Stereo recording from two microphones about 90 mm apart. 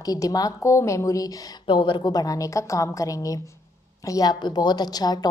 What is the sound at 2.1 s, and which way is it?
A woman's voice, 40° left (ahead or behind).